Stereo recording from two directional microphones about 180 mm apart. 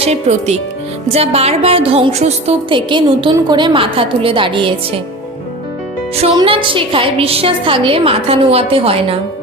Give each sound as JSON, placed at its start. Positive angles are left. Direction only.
{"t": 0.0, "sound": "a woman's voice", "side_deg": -40}
{"t": 6.1, "sound": "a woman's voice", "side_deg": -30}